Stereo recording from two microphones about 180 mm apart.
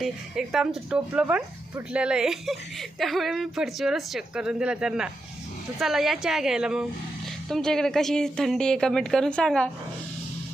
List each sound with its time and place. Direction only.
0.0 s speech: 5° right (ahead or behind)